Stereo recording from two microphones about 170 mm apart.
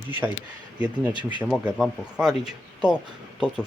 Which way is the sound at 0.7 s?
10° right (ahead or behind).